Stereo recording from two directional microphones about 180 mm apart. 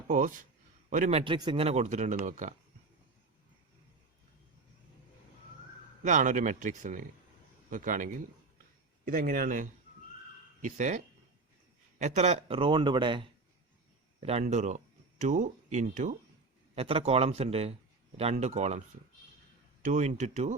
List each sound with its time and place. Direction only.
0.1 s a man's voice: 45° right (ahead or behind)
1.2 s speech: 25° right (ahead or behind); by 2.6 s 45° right (ahead or behind)
6.0 s speech: 45° right (ahead or behind)
19.8 s speech: 40° right (ahead or behind)